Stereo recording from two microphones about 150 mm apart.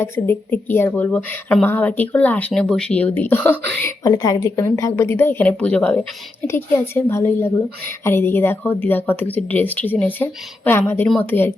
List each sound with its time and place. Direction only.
0.0 s a woman's voice: 15° left (ahead or behind)